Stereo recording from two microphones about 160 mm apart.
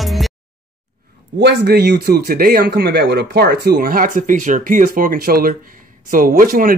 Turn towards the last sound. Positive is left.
turn(degrees=-60)  # may be behind; listen again after turning